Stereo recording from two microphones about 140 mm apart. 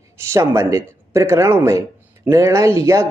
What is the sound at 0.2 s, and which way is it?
Speech, 20° right (ahead or behind).